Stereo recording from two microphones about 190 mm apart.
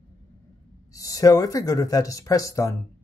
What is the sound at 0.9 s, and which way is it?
Speech, 15° left (ahead or behind).